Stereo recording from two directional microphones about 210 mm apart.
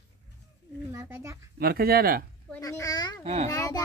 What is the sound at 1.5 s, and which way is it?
Speech, 45° right (ahead or behind).